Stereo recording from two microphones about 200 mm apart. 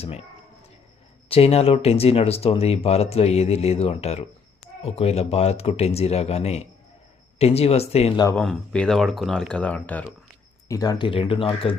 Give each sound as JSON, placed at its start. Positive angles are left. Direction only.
{"t": 0.0, "sound": "speech", "side_deg": 30}
{"t": 1.3, "sound": "speech", "side_deg": 30}
{"t": 8.4, "sound": "speech", "side_deg": 5}
{"t": 10.7, "sound": "speech", "side_deg": 20}